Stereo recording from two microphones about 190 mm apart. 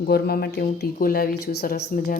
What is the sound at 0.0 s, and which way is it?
Speech, 55° left (ahead or behind).